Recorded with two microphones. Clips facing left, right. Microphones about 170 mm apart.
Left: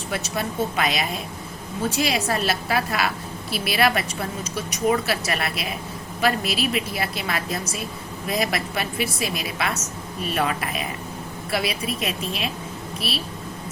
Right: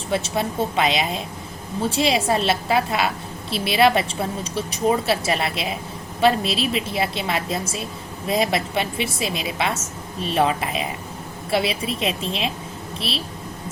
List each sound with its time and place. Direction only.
0.1 s speech: 25° right (ahead or behind)